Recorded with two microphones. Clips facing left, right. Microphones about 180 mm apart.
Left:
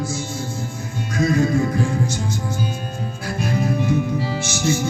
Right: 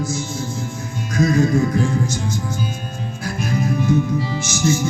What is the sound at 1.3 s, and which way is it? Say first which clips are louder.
Music: right 1 dB; 45° right (ahead or behind).